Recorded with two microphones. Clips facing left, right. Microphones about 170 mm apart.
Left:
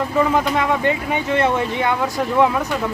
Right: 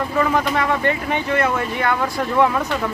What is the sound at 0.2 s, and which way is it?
Speech, 15° left (ahead or behind).